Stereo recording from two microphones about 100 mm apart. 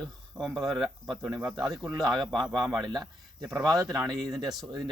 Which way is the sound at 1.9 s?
40° right (ahead or behind).